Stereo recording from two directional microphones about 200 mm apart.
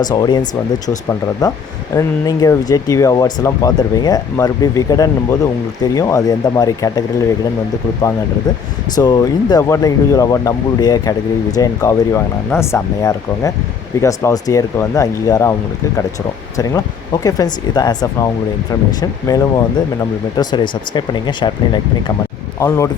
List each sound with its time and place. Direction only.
0.0 s speech: 20° left (ahead or behind)
9.0 s speech: 20° left (ahead or behind)
17.2 s speech: 20° left (ahead or behind)
19.3 s speech: 20° left (ahead or behind)
22.6 s speech: 15° left (ahead or behind)